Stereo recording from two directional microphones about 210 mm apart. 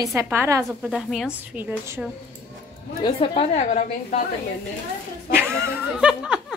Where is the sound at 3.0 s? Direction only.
25° left (ahead or behind).